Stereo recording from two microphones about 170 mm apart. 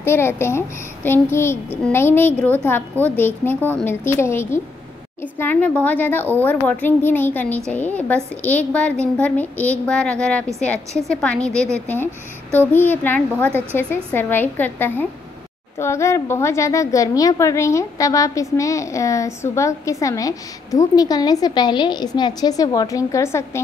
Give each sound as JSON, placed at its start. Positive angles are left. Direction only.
{"t": 0.0, "sound": "a child's voice", "side_deg": 15}